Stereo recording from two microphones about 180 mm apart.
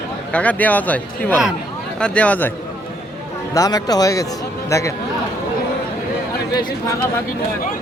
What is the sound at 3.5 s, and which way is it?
Speech, 20° left (ahead or behind).